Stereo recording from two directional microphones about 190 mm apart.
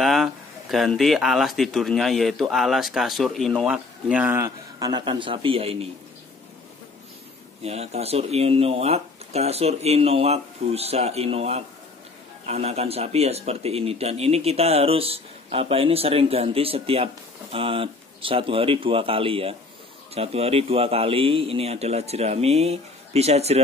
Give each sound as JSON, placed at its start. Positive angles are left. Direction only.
{"t": 0.0, "sound": "speech", "side_deg": 0}
{"t": 7.6, "sound": "speech", "side_deg": -35}